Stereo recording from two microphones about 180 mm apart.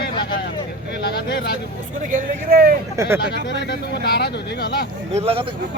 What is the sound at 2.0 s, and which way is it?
Speech, 45° right (ahead or behind).